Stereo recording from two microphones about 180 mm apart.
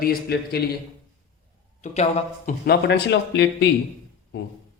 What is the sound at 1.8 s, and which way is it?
Speech, 40° left (ahead or behind).